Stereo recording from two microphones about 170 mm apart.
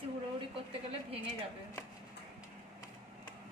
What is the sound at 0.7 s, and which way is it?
Speech, 35° right (ahead or behind).